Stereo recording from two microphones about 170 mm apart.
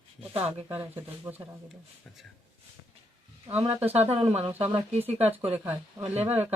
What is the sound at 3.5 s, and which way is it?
Speech, 35° right (ahead or behind).